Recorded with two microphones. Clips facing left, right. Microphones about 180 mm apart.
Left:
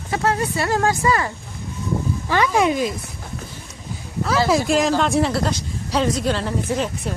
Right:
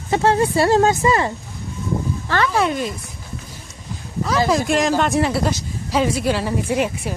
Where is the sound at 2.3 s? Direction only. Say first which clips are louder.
Left 1 dB; 15° left (ahead or behind).